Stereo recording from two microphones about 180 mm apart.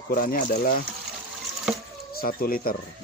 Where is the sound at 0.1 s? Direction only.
50° left (ahead or behind).